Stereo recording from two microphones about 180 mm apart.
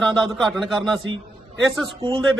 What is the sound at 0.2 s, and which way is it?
Speech, centre (ahead or behind).